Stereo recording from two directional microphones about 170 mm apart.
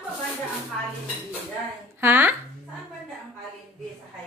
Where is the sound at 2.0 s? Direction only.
10° right (ahead or behind).